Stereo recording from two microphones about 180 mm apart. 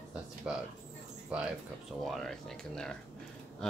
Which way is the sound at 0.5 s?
5° right (ahead or behind).